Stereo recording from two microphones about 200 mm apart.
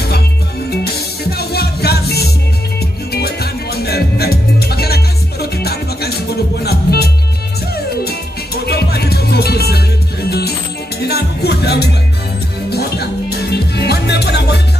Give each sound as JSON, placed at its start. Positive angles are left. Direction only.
{"t": 1.4, "sound": "music", "side_deg": 50}
{"t": 11.0, "sound": "music", "side_deg": 55}